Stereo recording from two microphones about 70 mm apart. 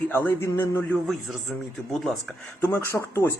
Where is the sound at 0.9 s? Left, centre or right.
Centre.